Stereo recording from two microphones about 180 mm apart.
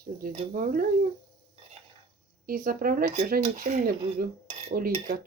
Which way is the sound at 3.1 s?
40° right (ahead or behind).